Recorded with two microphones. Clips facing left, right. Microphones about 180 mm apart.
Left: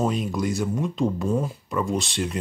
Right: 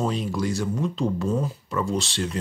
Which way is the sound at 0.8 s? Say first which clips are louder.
Left 1 dB; 5° left (ahead or behind).